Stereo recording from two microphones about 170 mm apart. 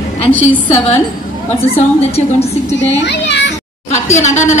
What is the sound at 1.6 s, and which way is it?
A woman's voice, 35° left (ahead or behind).